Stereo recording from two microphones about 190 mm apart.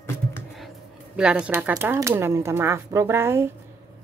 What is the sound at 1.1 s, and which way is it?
Speech, 5° right (ahead or behind).